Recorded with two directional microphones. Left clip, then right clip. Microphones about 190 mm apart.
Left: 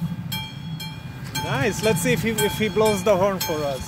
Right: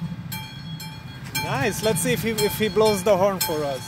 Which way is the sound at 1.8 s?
10° right (ahead or behind).